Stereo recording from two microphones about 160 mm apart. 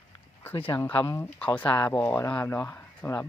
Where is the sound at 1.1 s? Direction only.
15° left (ahead or behind).